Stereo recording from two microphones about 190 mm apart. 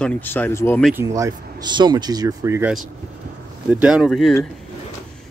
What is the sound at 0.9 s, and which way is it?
Speech, 15° right (ahead or behind).